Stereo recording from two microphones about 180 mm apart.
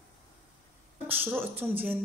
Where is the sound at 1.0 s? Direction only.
10° right (ahead or behind).